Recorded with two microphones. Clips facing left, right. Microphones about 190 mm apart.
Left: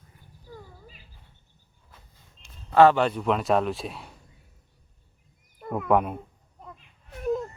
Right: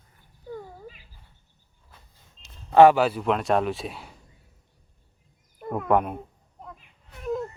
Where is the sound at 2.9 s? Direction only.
5° right (ahead or behind).